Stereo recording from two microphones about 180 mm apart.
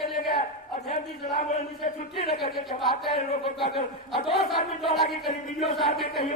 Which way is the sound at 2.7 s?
Centre (ahead or behind).